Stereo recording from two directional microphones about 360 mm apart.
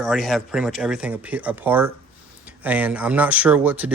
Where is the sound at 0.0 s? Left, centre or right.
Centre.